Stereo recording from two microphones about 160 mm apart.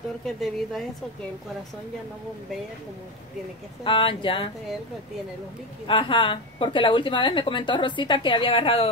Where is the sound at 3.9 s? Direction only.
30° left (ahead or behind).